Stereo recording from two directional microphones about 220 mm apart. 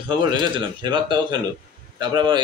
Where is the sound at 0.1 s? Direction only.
20° right (ahead or behind).